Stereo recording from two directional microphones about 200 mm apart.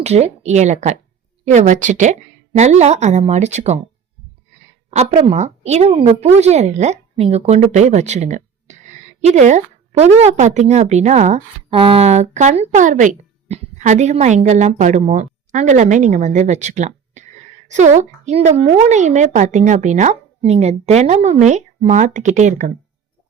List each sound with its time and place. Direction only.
0.0 s a woman's voice: 35° right (ahead or behind)
4.9 s a woman's voice: 35° right (ahead or behind)